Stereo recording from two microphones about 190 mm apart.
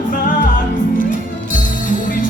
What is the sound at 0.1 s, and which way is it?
Music, 45° left (ahead or behind).